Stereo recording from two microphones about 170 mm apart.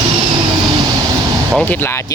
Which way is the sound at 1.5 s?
10° left (ahead or behind).